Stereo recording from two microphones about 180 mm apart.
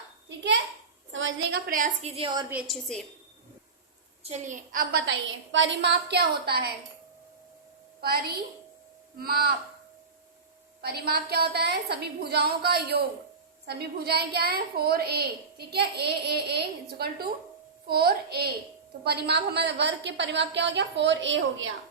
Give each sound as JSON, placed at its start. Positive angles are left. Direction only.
{"t": 0.3, "sound": "a sound", "side_deg": -80}
{"t": 1.1, "sound": "a woman's voice", "side_deg": -90}
{"t": 2.5, "sound": "a woman's voice", "side_deg": -5}
{"t": 4.2, "sound": "a woman's voice", "side_deg": -40}
{"t": 8.0, "sound": "a woman's voice", "side_deg": -60}
{"t": 10.8, "sound": "a woman's voice", "side_deg": -60}